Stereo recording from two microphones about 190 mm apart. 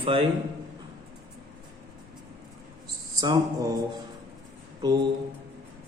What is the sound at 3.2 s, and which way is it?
Speech, 20° right (ahead or behind).